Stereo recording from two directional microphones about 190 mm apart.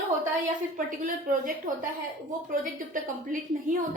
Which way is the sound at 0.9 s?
45° right (ahead or behind).